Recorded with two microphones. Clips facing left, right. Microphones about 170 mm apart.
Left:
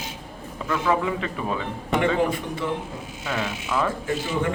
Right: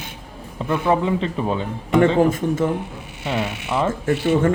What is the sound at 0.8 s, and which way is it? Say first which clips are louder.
Speech: right 4 dB; 30° right (ahead or behind).